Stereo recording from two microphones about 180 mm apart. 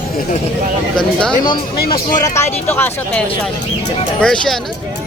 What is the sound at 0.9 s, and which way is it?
Speech, 5° left (ahead or behind).